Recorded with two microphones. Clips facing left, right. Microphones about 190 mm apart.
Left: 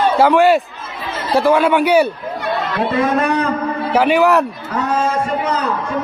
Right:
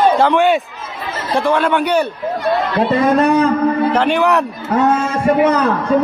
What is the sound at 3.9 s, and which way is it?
Speech, 5° left (ahead or behind).